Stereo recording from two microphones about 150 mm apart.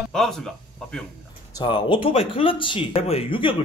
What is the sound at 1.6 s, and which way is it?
Speech, 35° left (ahead or behind).